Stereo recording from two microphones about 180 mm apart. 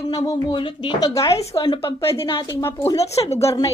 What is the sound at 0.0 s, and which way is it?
A woman's voice, 20° left (ahead or behind).